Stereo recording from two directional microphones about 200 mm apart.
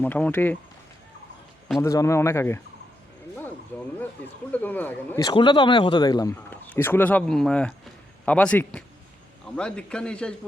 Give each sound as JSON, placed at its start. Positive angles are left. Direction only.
{"t": 0.0, "sound": "speech", "side_deg": 10}
{"t": 1.8, "sound": "speech", "side_deg": 15}
{"t": 3.7, "sound": "speech", "side_deg": 10}